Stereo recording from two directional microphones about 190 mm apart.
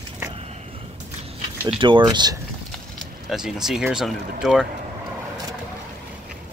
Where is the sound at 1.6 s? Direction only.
25° right (ahead or behind).